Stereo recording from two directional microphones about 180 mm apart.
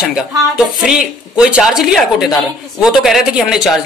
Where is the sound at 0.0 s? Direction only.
5° right (ahead or behind).